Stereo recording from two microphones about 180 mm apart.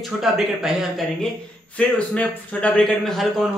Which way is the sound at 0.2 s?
Centre (ahead or behind).